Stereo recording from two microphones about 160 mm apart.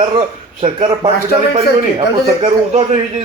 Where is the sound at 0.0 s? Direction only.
30° right (ahead or behind).